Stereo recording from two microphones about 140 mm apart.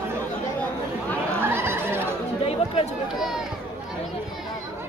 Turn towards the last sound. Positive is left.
turn(degrees=-5)  # may be behind; listen again after turning